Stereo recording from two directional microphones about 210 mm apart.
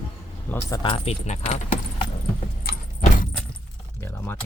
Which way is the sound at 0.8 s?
25° left (ahead or behind).